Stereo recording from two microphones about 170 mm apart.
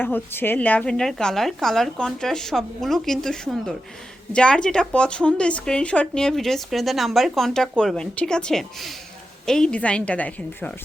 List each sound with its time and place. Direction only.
0.0 s a woman's voice: 10° left (ahead or behind)